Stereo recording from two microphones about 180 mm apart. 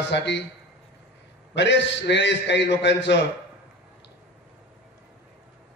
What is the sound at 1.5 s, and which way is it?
A man's voice, 80° left.